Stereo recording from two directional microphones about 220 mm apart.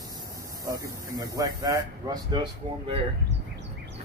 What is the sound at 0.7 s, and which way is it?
Speech, 15° right (ahead or behind).